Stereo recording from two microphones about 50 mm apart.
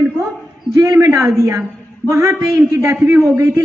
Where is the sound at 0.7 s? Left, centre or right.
Right.